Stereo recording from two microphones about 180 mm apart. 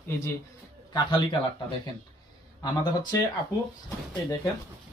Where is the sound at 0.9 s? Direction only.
25° left (ahead or behind).